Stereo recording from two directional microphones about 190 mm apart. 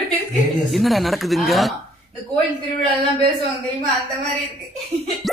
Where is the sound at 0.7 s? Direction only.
Centre (ahead or behind).